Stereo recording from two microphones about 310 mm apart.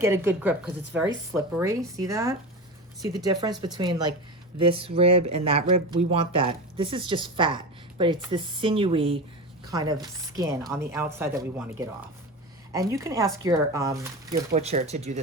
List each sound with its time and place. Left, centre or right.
0.0 s speech: centre
3.6 s speech: centre